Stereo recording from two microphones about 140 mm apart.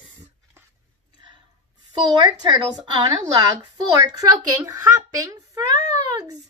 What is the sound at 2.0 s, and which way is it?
A woman's voice, 30° right (ahead or behind).